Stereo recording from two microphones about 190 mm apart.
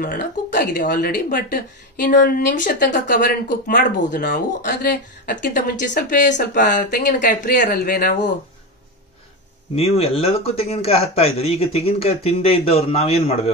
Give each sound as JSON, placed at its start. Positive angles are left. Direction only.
{"t": 0.0, "sound": "speech", "side_deg": 45}
{"t": 9.8, "sound": "speech", "side_deg": 30}